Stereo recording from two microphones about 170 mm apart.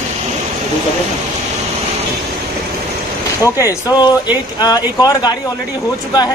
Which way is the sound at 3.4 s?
20° left (ahead or behind).